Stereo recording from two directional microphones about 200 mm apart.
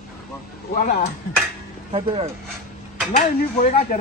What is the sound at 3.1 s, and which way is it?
Speech, 35° left (ahead or behind).